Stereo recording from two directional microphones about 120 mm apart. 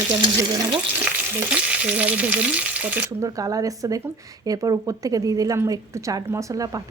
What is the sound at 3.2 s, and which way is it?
A woman's voice, 30° right (ahead or behind).